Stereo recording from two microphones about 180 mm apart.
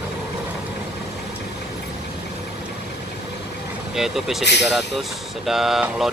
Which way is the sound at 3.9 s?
Centre (ahead or behind).